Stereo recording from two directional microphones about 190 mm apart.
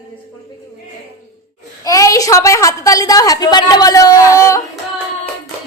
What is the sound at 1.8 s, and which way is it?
A woman's voice, 15° left (ahead or behind).